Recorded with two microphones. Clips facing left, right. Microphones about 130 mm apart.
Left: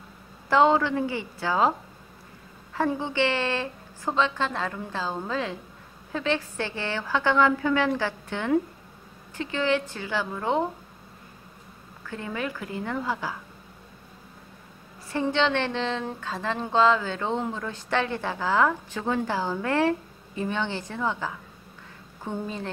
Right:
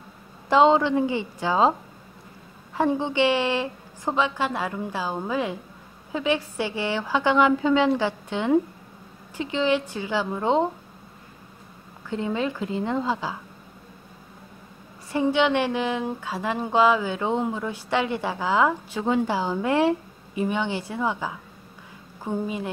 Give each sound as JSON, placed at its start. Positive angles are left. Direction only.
{"t": 0.5, "sound": "a woman's voice", "side_deg": -20}
{"t": 2.7, "sound": "speech", "side_deg": -20}
{"t": 12.1, "sound": "a woman's voice", "side_deg": -20}
{"t": 15.1, "sound": "speech", "side_deg": -15}